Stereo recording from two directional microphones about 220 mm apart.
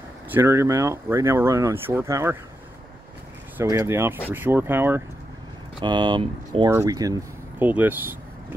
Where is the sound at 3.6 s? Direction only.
15° right (ahead or behind).